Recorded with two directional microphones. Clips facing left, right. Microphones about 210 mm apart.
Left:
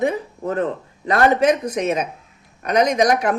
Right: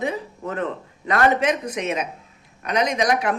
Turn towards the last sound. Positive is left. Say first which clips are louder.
# left 4 dB
turn(degrees=45)  # may be behind; listen again after turning